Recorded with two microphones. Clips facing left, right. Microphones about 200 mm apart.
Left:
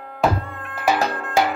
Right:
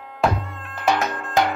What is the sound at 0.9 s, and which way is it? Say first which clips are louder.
Music: left 2 dB; 35° left (ahead or behind).